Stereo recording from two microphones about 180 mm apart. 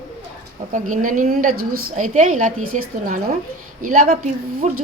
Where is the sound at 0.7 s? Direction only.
45° right (ahead or behind).